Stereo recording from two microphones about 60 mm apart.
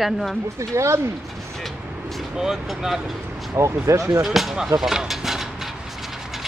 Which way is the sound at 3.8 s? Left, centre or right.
Right.